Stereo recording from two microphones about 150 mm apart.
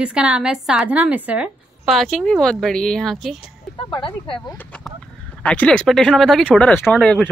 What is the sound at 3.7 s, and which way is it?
Speech, 35° left (ahead or behind).